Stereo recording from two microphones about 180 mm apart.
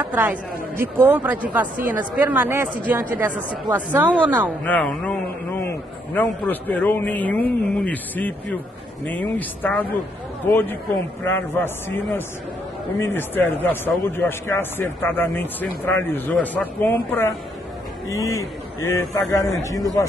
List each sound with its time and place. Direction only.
0.0 s speech: 10° right (ahead or behind)
4.6 s a man's voice: 5° left (ahead or behind)
13.0 s a man's voice: 10° left (ahead or behind)